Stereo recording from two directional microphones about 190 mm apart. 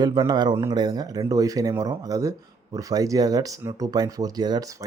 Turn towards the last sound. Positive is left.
turn(degrees=-20)  # may be behind; listen again after turning